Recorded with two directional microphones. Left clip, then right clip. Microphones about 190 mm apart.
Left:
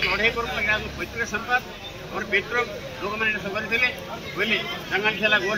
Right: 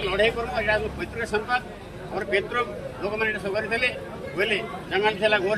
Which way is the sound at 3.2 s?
35° right (ahead or behind).